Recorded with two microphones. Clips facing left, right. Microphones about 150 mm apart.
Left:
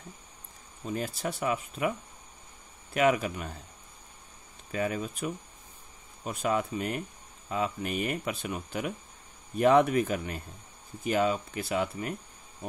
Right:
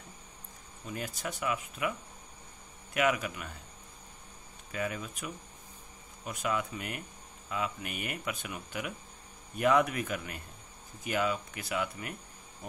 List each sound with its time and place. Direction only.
0.8 s speech: 30° left (ahead or behind)
4.7 s speech: 35° left (ahead or behind)